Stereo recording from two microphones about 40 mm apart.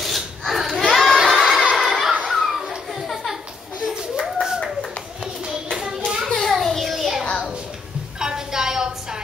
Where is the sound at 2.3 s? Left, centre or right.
Centre.